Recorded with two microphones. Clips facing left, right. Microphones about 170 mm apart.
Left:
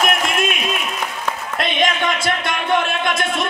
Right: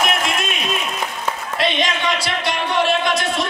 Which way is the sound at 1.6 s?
50° left (ahead or behind).